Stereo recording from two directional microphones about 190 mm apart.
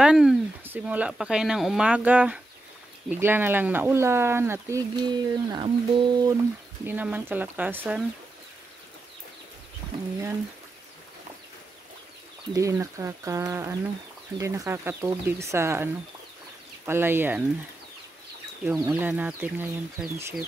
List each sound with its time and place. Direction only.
0.0 s speech: 5° right (ahead or behind); by 6.3 s 20° right (ahead or behind)
6.9 s speech: 10° right (ahead or behind)
12.5 s speech: 15° right (ahead or behind)
18.7 s speech: 10° right (ahead or behind)